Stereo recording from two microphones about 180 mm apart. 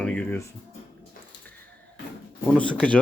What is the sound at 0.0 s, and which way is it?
Speech, 10° left (ahead or behind).